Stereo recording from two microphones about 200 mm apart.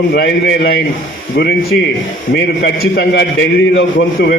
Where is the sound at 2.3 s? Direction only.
50° left (ahead or behind).